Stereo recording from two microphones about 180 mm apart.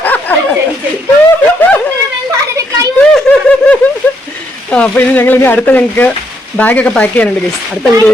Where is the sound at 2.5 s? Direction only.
15° right (ahead or behind).